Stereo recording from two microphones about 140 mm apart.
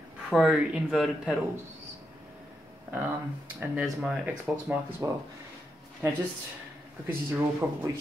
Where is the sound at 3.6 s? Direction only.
5° right (ahead or behind).